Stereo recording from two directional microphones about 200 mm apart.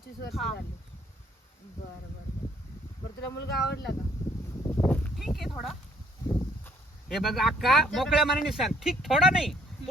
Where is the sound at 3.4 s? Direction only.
55° left (ahead or behind).